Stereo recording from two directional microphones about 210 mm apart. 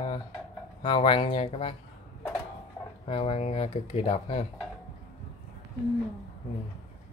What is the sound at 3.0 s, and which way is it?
Speech, 30° left (ahead or behind).